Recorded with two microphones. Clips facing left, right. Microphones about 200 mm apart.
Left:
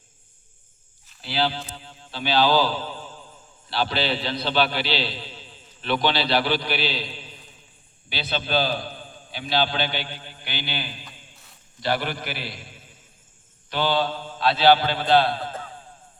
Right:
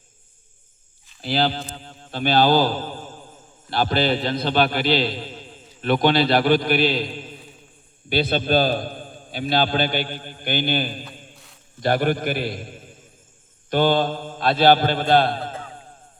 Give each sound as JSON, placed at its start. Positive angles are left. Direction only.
{"t": 1.2, "sound": "a man's voice", "side_deg": -45}